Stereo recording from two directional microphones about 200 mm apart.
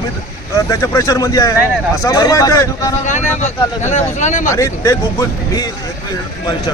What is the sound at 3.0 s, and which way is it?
Speech, 35° left (ahead or behind).